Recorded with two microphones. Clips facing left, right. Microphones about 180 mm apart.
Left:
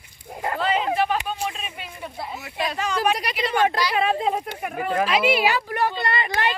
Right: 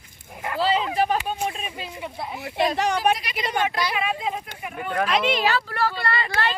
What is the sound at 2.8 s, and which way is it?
Speech, 65° right (ahead or behind).